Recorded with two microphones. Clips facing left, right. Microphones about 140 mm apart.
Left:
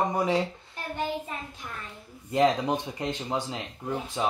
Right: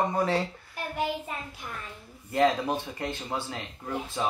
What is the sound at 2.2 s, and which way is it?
Speech, 20° left (ahead or behind).